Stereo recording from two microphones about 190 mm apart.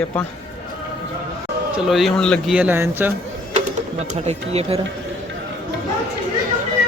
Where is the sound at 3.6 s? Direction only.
35° right (ahead or behind).